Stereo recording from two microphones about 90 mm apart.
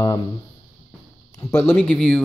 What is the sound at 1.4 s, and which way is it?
Speech, 35° left (ahead or behind).